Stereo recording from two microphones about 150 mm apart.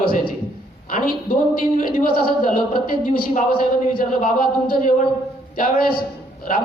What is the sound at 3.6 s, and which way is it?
A man's voice, 75° left (ahead or behind).